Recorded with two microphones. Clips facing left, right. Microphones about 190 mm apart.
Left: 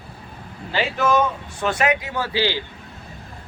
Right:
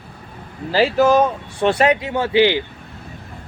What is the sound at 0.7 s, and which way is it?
Speech, 35° right (ahead or behind).